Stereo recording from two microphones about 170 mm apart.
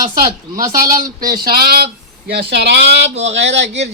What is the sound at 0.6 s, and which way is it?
A man's voice, 55° right (ahead or behind).